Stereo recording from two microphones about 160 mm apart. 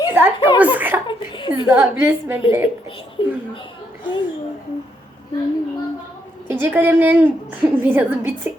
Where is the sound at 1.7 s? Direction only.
15° right (ahead or behind).